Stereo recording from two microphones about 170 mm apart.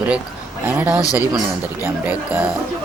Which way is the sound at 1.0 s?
20° left (ahead or behind).